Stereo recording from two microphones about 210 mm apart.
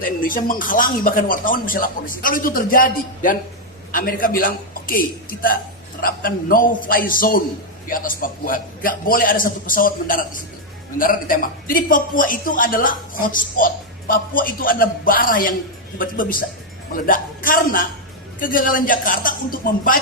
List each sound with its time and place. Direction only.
0.2 s a man's voice: 40° left (ahead or behind)